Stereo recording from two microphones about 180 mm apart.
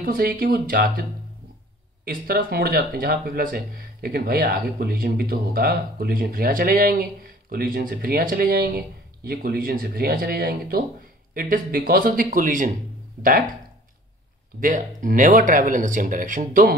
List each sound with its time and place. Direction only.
0.0 s speech: 55° right (ahead or behind)
2.0 s speech: 55° right (ahead or behind)
14.6 s speech: 45° right (ahead or behind)